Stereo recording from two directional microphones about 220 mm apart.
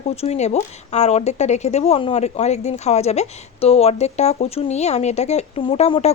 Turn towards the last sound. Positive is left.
turn(degrees=30)  # may be behind; listen again after turning